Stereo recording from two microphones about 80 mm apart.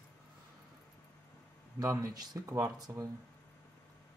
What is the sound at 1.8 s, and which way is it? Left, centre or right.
Speech, right.